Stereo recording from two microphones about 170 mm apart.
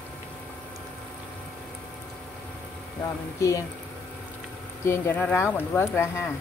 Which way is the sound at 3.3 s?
20° left (ahead or behind).